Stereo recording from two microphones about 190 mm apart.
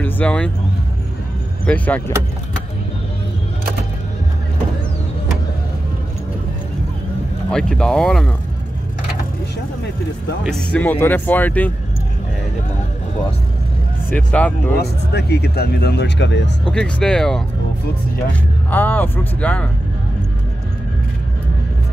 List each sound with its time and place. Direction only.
0.0 s speech: 5° left (ahead or behind)
1.7 s speech: 10° left (ahead or behind)
7.5 s speech: 5° left (ahead or behind)
10.4 s speech: 5° left (ahead or behind)
14.1 s speech: 5° left (ahead or behind)
14.8 s speech: 60° left (ahead or behind)
16.6 s speech: 5° left (ahead or behind)
18.7 s speech: 10° left (ahead or behind)